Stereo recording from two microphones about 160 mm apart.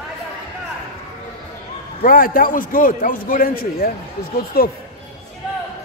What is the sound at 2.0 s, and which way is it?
A man's voice, 60° left (ahead or behind).